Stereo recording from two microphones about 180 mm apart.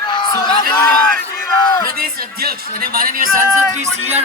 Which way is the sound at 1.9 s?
55° right (ahead or behind).